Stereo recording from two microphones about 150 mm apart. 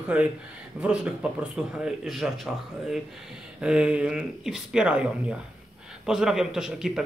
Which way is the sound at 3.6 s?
5° right (ahead or behind).